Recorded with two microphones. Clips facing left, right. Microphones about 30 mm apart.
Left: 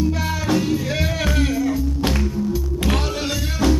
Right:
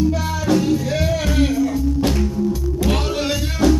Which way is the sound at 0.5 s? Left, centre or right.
Centre.